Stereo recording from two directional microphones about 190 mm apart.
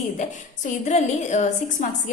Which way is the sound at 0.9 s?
40° left (ahead or behind).